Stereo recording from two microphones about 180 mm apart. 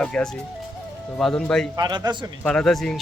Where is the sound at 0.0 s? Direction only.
5° left (ahead or behind).